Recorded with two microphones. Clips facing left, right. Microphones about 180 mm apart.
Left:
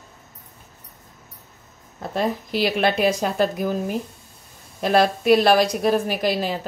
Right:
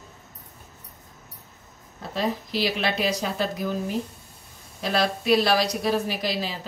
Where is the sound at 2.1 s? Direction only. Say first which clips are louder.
Left 3 dB; 55° left (ahead or behind).